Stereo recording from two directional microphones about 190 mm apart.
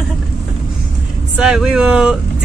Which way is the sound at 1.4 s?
5° right (ahead or behind).